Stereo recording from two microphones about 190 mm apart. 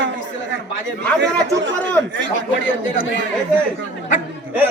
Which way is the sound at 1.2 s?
70° right (ahead or behind).